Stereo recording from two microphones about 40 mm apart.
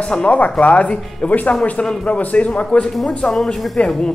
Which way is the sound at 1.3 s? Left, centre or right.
Left.